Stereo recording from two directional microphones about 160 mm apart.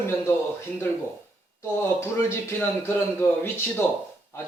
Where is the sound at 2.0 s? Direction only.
15° left (ahead or behind).